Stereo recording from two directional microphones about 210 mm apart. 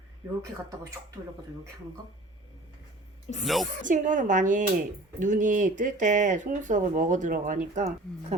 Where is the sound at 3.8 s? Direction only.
35° right (ahead or behind).